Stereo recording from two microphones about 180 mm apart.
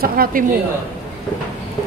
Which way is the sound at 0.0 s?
50° right (ahead or behind).